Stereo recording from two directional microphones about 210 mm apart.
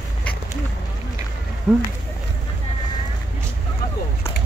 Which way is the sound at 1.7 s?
Centre (ahead or behind).